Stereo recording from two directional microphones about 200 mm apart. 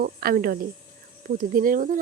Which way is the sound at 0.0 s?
50° right (ahead or behind).